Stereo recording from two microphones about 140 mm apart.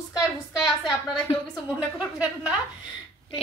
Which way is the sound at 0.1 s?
5° right (ahead or behind).